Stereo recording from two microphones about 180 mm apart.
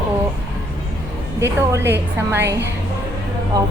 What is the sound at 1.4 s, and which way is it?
A woman's voice, 15° right (ahead or behind).